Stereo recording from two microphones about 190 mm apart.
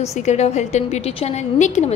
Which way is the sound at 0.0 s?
35° left (ahead or behind).